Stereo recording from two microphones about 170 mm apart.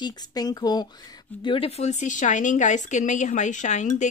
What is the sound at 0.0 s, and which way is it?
Speech, 25° left (ahead or behind).